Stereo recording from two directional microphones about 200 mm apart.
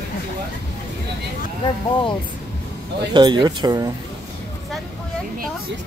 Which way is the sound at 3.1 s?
20° right (ahead or behind).